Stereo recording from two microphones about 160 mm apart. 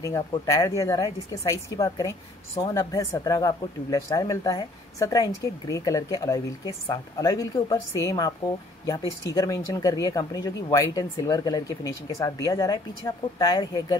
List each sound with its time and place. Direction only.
0.0 s speech: 20° left (ahead or behind)
9.3 s speech: 20° left (ahead or behind)